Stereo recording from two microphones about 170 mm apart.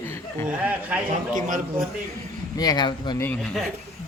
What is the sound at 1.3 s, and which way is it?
Speech, 50° right (ahead or behind).